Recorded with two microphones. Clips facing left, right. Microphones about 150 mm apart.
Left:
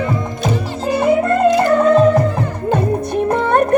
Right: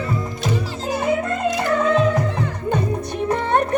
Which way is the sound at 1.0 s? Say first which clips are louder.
Left 8 dB; 60° left (ahead or behind).